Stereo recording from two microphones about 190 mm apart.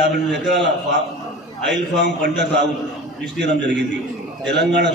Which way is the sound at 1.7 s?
70° right (ahead or behind).